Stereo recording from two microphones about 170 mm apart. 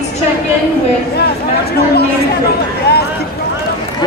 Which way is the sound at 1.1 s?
70° left (ahead or behind).